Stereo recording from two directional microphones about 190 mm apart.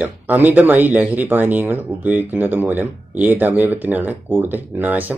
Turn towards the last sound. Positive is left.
turn(degrees=-10)  # may be behind; listen again after turning